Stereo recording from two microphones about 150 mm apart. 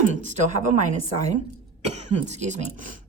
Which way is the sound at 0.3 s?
50° right (ahead or behind).